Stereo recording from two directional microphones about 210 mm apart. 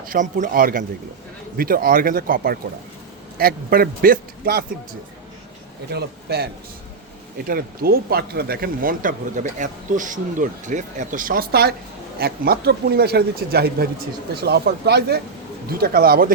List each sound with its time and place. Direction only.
0.0 s speech: 40° right (ahead or behind)
5.9 s speech: 50° right (ahead or behind)